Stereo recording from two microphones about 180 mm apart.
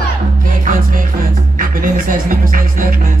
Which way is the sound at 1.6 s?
50° right (ahead or behind).